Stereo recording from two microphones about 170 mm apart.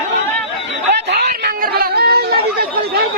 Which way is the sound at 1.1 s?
70° right (ahead or behind).